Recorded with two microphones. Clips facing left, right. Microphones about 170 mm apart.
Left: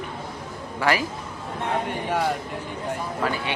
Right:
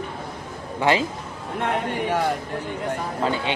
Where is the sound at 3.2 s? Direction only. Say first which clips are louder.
Right 3 dB; 25° right (ahead or behind).